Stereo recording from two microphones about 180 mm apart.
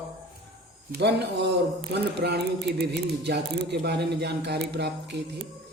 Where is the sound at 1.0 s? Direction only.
70° right (ahead or behind).